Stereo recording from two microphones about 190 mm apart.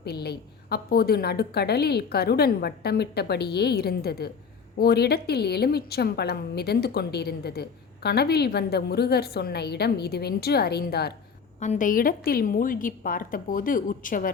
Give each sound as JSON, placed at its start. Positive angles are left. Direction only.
{"t": 0.0, "sound": "a woman's voice", "side_deg": 55}
{"t": 11.6, "sound": "a woman's voice", "side_deg": 40}